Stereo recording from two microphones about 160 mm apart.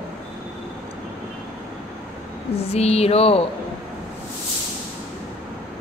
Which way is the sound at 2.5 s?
40° left (ahead or behind).